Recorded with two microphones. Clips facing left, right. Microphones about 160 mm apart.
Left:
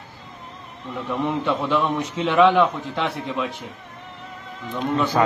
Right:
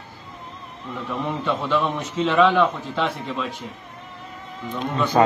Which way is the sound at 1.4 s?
15° left (ahead or behind).